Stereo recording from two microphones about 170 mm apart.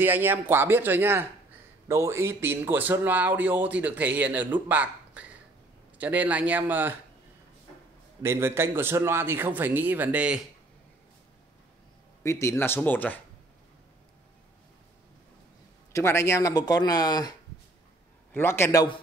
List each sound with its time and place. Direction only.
0.0 s speech: 10° right (ahead or behind)
8.2 s speech: 15° right (ahead or behind)
12.2 s speech: 15° left (ahead or behind)
15.9 s speech: 15° left (ahead or behind)